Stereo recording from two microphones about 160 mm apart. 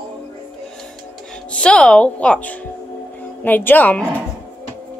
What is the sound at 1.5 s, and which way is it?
A child's voice, 5° left (ahead or behind).